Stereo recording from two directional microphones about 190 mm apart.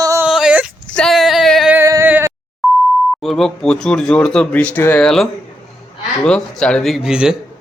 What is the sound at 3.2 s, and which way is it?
A man's voice, centre (ahead or behind).